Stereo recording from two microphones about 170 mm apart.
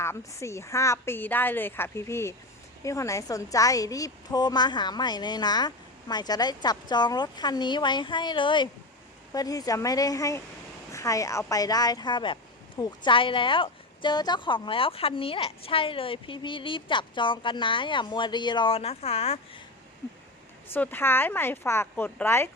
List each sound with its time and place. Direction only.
0.0 s a woman's voice: 15° left (ahead or behind); by 19.6 s 35° left (ahead or behind)
20.7 s a woman's voice: 10° left (ahead or behind)